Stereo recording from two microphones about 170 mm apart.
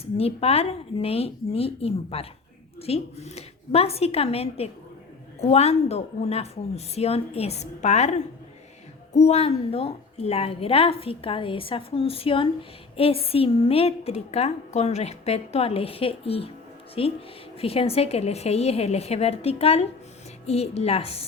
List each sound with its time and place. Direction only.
0.0 s a woman's voice: 35° left (ahead or behind)